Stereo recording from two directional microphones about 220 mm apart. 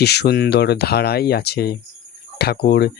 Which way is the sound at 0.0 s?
50° left (ahead or behind).